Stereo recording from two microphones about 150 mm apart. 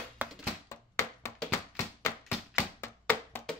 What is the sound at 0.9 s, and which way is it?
Tap, 20° left (ahead or behind).